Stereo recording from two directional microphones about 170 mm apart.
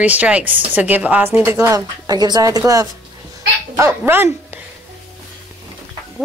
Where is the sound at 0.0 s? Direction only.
10° right (ahead or behind).